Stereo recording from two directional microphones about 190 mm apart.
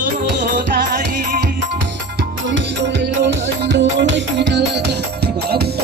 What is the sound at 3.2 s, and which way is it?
Music, 70° right (ahead or behind).